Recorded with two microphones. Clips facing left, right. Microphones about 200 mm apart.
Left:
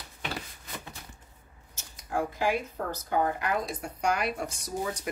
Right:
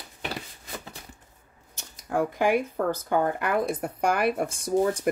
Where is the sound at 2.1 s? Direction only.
60° right (ahead or behind).